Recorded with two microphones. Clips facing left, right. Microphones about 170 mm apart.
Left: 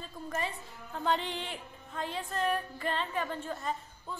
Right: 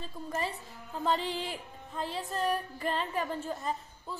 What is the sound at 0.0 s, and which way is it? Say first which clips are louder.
Speech: right 1 dB; 35° right (ahead or behind).